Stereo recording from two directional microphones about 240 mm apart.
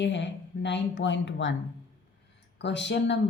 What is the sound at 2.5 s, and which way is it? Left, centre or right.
Speech, left.